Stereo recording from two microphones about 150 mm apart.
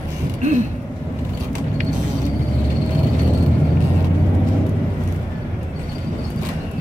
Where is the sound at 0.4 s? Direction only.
55° right (ahead or behind).